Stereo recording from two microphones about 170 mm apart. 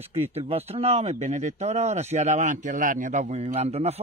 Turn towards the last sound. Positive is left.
turn(degrees=-40)  # may be behind; listen again after turning